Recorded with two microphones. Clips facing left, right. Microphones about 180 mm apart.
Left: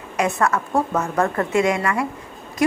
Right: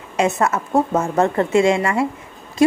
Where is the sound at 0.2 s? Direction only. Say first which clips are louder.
Right 2 dB; 25° right (ahead or behind).